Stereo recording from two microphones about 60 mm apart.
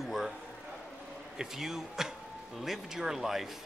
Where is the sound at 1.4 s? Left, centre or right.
Centre.